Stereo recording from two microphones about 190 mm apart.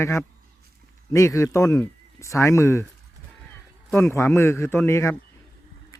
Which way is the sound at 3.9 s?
15° left (ahead or behind).